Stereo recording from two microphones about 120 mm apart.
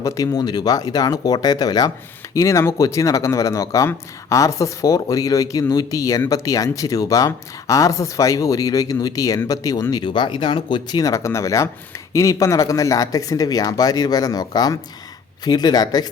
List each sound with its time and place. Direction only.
0.0 s speech: 25° left (ahead or behind)
9.9 s speech: 40° left (ahead or behind)